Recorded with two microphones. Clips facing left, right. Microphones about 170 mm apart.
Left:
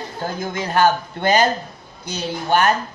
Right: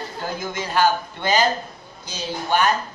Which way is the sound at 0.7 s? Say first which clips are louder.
Left 2 dB; 55° left (ahead or behind).